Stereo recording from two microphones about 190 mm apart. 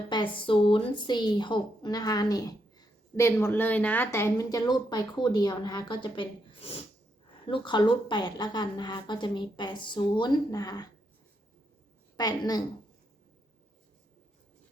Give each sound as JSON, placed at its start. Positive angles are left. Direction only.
{"t": 0.1, "sound": "speech", "side_deg": 25}
{"t": 12.1, "sound": "speech", "side_deg": 20}